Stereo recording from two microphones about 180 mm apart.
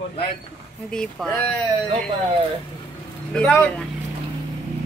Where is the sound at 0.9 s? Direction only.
5° left (ahead or behind).